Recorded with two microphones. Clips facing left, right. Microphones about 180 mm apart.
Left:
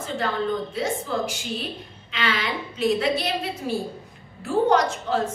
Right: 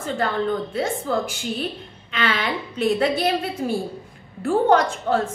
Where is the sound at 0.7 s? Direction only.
55° right (ahead or behind).